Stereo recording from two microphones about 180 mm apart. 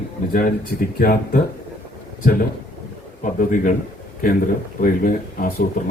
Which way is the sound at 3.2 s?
45° left (ahead or behind).